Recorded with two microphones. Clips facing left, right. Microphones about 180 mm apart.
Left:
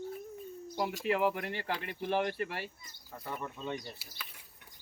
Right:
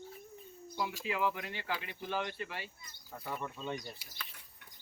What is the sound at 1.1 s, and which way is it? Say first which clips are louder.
Speech: left 6 dB; 45° left (ahead or behind).